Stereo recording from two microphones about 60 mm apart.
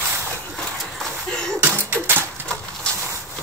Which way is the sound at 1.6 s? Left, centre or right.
Right.